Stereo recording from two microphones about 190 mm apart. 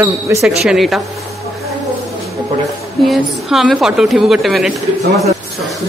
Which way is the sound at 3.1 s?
Centre (ahead or behind).